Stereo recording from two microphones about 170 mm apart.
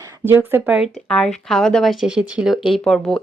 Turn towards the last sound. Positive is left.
turn(degrees=5)  # may be behind; listen again after turning